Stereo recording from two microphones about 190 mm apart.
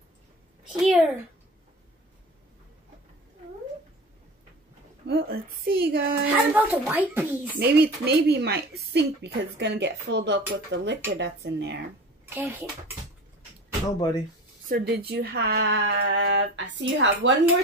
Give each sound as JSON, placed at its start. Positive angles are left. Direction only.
{"t": 0.7, "sound": "a child's voice", "side_deg": 0}
{"t": 5.0, "sound": "speech", "side_deg": -55}
{"t": 6.3, "sound": "speech", "side_deg": -10}
{"t": 7.5, "sound": "speech", "side_deg": -55}
{"t": 12.3, "sound": "speech", "side_deg": -10}
{"t": 14.7, "sound": "speech", "side_deg": -55}